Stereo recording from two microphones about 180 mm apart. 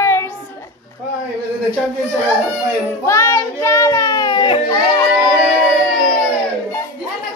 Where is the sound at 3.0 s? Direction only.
15° left (ahead or behind).